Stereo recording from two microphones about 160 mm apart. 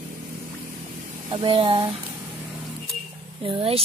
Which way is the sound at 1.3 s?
30° right (ahead or behind).